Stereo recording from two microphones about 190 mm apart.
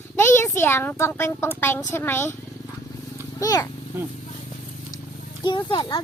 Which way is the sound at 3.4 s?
20° left (ahead or behind).